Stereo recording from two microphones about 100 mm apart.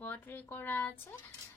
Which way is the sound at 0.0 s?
20° left (ahead or behind).